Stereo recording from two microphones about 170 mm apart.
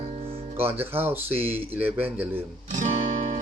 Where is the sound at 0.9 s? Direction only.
10° right (ahead or behind).